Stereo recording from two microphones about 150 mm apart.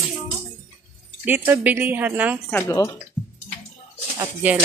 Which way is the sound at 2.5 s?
20° left (ahead or behind).